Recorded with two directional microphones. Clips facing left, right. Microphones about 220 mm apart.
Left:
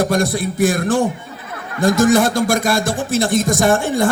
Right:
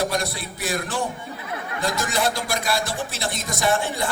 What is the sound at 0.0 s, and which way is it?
A man's voice, 50° left (ahead or behind).